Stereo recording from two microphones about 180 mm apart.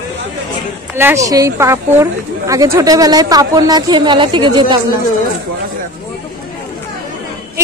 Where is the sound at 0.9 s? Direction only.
15° right (ahead or behind).